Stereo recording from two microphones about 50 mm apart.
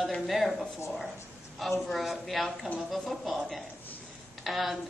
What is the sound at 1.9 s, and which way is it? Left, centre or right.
A man's voice, centre.